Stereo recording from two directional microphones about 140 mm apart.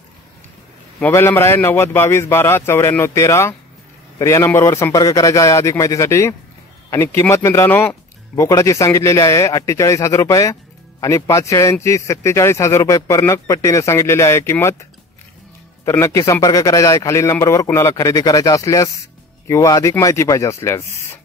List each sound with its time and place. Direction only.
1.1 s a man's voice: 20° left (ahead or behind)